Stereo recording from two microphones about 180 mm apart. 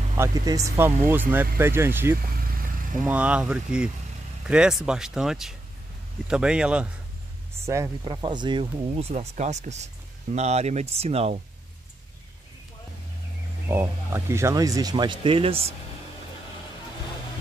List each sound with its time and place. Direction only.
0.2 s speech: 15° right (ahead or behind)
7.6 s speech: 15° right (ahead or behind); by 11.4 s 35° right (ahead or behind)
13.7 s speech: 15° right (ahead or behind); by 15.7 s 30° right (ahead or behind)